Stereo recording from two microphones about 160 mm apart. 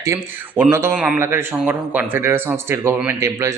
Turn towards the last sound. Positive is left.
turn(degrees=-20)  # may be behind; listen again after turning